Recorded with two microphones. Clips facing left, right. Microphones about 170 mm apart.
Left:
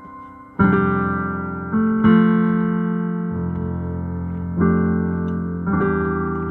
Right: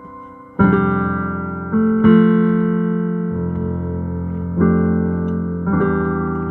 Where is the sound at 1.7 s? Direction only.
45° right (ahead or behind).